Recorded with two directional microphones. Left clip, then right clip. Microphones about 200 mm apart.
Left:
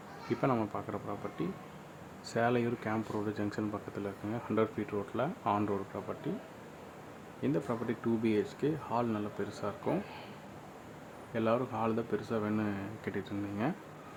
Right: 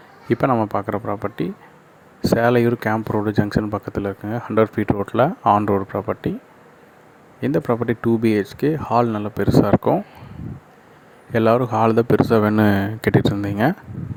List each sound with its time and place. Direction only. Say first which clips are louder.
0.3 s speech: right 14 dB; 40° right (ahead or behind)
7.4 s speech: right 14 dB; 40° right (ahead or behind)
11.3 s speech: right 15 dB; 45° right (ahead or behind)